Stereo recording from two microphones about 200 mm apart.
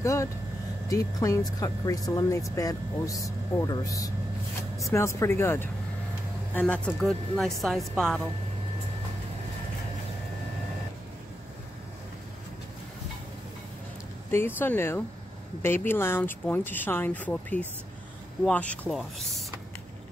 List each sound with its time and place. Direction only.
0.0 s a woman's voice: 15° left (ahead or behind)
14.3 s a woman's voice: 10° left (ahead or behind)